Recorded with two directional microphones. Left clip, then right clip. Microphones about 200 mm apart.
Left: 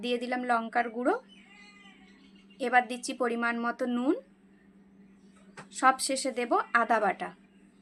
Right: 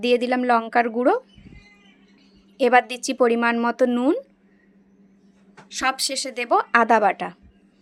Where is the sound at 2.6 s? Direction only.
45° right (ahead or behind).